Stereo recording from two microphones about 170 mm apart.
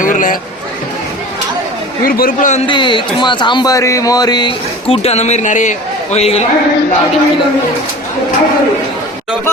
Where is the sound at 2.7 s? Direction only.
30° left (ahead or behind).